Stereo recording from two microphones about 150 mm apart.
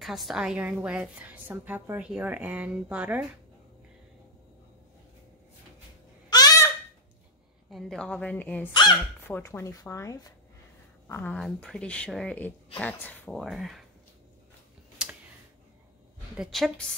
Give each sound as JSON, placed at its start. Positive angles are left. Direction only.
{"t": 0.0, "sound": "a woman's voice", "side_deg": 0}
{"t": 6.3, "sound": "a sound", "side_deg": 25}
{"t": 7.7, "sound": "a woman's voice", "side_deg": 5}
{"t": 11.3, "sound": "a woman's voice", "side_deg": 5}
{"t": 13.4, "sound": "speech", "side_deg": 0}
{"t": 16.3, "sound": "speech", "side_deg": 0}